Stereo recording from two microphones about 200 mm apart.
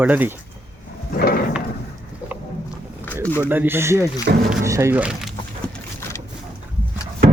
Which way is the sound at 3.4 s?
10° right (ahead or behind).